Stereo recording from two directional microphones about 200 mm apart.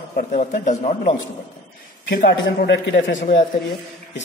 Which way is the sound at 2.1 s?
45° left (ahead or behind).